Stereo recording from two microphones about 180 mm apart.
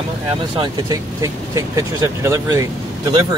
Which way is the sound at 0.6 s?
20° right (ahead or behind).